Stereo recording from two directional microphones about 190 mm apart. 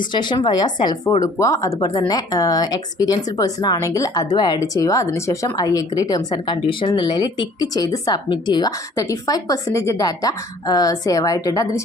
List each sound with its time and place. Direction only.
0.1 s a woman's voice: 25° left (ahead or behind)